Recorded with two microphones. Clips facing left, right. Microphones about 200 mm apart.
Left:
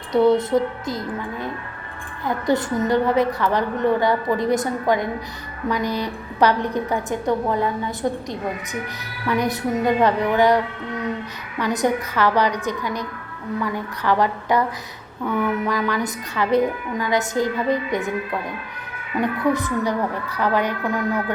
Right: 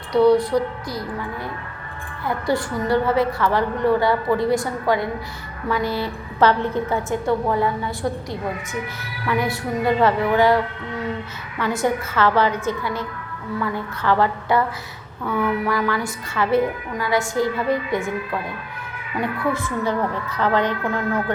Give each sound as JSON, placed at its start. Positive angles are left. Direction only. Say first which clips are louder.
{"t": 0.1, "sound": "a woman's voice", "louder": "right 1 dB", "side_deg": 20}
{"t": 19.2, "sound": "a woman's voice", "louder": "left 3 dB", "side_deg": 20}